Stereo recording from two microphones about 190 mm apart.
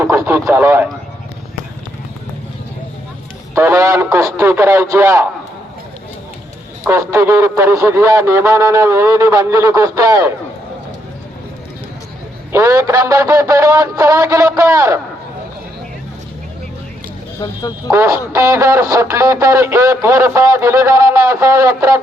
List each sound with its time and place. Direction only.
0.0 s radio: 15° right (ahead or behind)
3.5 s music: 15° right (ahead or behind)
6.8 s music: 15° right (ahead or behind)
12.5 s music: 15° right (ahead or behind)
17.4 s speech: 20° left (ahead or behind)
17.9 s music: 15° right (ahead or behind)